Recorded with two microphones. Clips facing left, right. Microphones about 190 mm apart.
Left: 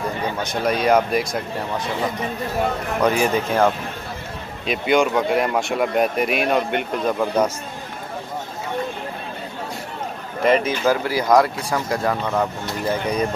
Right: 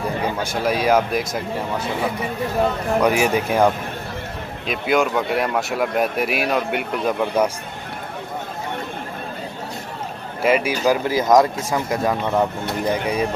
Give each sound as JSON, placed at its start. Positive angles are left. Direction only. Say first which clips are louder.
{"t": 0.4, "sound": "speech", "louder": "left 2 dB", "side_deg": -5}
{"t": 4.6, "sound": "speech", "louder": "left 1 dB", "side_deg": 0}
{"t": 10.4, "sound": "speech", "louder": "even", "side_deg": -10}